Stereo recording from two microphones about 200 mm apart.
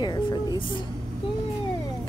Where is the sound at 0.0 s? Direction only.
20° left (ahead or behind).